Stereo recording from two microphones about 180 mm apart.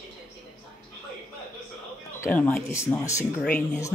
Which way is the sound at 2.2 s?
10° left (ahead or behind).